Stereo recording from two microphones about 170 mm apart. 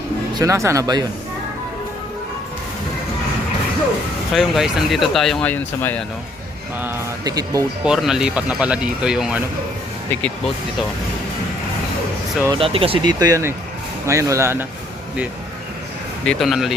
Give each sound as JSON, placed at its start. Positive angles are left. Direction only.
{"t": 0.3, "sound": "speech", "side_deg": -15}
{"t": 4.4, "sound": "speech", "side_deg": 0}
{"t": 6.8, "sound": "speech", "side_deg": -20}
{"t": 7.9, "sound": "speech", "side_deg": -5}
{"t": 12.5, "sound": "speech", "side_deg": -35}
{"t": 13.1, "sound": "speech", "side_deg": -20}
{"t": 16.2, "sound": "speech", "side_deg": 5}